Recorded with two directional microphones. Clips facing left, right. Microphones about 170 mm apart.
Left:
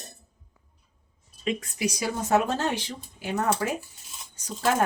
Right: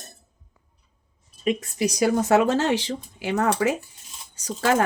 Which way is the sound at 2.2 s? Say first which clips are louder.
Right 1 dB; 90° right.